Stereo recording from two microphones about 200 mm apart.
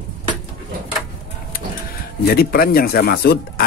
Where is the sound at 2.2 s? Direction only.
50° left (ahead or behind).